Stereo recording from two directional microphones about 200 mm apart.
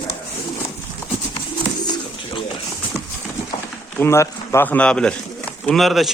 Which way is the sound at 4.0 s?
15° left (ahead or behind).